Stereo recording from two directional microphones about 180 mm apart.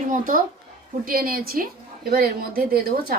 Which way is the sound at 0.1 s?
50° right (ahead or behind).